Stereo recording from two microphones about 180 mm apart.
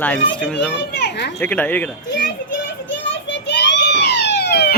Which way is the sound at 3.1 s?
85° left.